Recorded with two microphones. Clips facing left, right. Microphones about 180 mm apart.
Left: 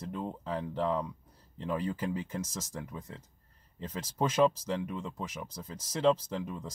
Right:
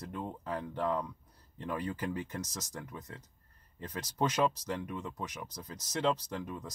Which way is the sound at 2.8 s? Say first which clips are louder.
Left 2 dB; 25° left (ahead or behind).